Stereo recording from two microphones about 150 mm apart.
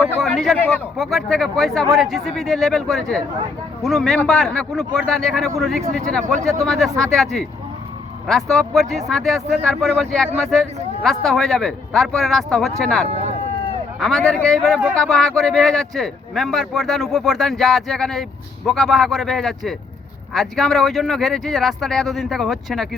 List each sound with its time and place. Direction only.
0.2 s speech: centre (ahead or behind)
13.1 s a sound: 40° right (ahead or behind)
14.0 s speech: centre (ahead or behind)